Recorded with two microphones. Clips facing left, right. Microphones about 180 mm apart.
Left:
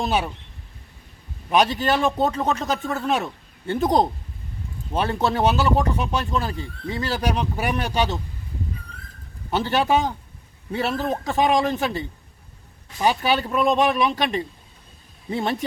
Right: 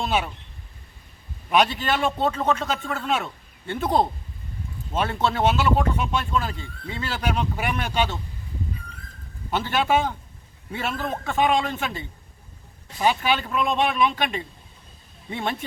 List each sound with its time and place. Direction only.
0.0 s speech: 40° left (ahead or behind)
1.5 s speech: 40° left (ahead or behind)
5.2 s speech: 35° left (ahead or behind)
9.6 s speech: 40° left (ahead or behind)